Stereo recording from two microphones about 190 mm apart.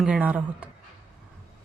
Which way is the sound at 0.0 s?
5° right (ahead or behind).